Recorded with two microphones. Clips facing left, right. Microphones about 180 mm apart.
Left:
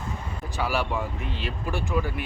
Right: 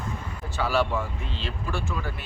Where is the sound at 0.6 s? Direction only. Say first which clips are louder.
Right 2 dB; 15° left (ahead or behind).